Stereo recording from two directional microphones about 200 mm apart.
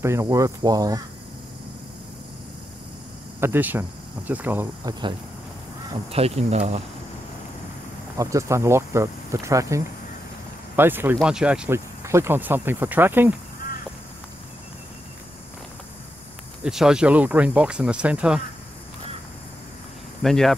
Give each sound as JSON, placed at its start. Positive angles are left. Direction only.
{"t": 0.0, "sound": "speech", "side_deg": -15}
{"t": 3.3, "sound": "speech", "side_deg": -10}
{"t": 6.1, "sound": "speech", "side_deg": -30}
{"t": 8.2, "sound": "speech", "side_deg": -15}
{"t": 16.6, "sound": "speech", "side_deg": -5}
{"t": 20.2, "sound": "speech", "side_deg": 0}